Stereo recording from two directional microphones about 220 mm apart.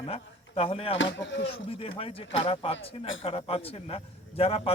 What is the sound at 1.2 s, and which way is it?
Speech, 55° left (ahead or behind).